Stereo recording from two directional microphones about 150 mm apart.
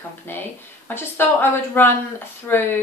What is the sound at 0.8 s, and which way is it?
Speech, 15° left (ahead or behind).